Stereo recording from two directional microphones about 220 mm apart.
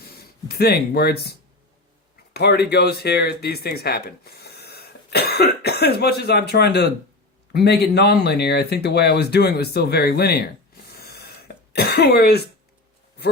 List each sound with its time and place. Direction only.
0.0 s speech: 45° left (ahead or behind)
10.9 s throat clearing: 45° left (ahead or behind)